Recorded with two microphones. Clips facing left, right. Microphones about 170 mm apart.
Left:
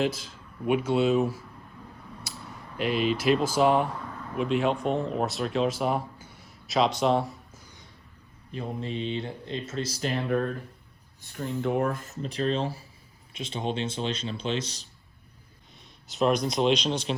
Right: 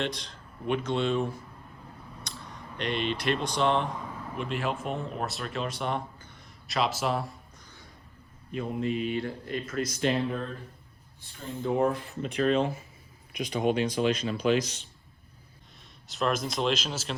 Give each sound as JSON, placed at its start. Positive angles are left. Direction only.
{"t": 0.0, "sound": "speech", "side_deg": 5}
{"t": 2.3, "sound": "a sound", "side_deg": 5}
{"t": 2.7, "sound": "speech", "side_deg": 5}
{"t": 8.5, "sound": "speech", "side_deg": 30}
{"t": 11.6, "sound": "speech", "side_deg": 70}
{"t": 11.9, "sound": "speech", "side_deg": 40}
{"t": 16.0, "sound": "speech", "side_deg": 0}